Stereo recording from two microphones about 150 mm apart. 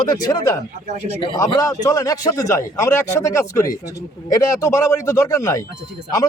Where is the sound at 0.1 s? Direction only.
25° left (ahead or behind).